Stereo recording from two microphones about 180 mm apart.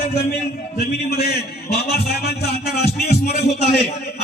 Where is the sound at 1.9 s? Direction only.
65° left (ahead or behind).